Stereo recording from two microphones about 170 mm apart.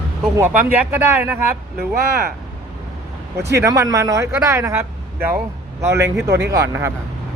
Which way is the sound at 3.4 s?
15° right (ahead or behind).